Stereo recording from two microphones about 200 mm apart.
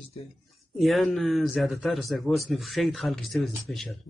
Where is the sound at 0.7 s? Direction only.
Centre (ahead or behind).